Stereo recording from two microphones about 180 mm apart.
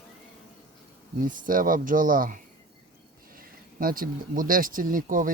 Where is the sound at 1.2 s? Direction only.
50° right (ahead or behind).